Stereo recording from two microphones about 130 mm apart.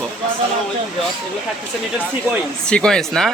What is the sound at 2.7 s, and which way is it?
Speech, 5° left (ahead or behind).